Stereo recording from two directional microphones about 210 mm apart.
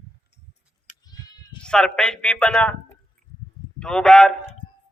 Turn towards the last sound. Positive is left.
turn(degrees=5)  # may be behind; listen again after turning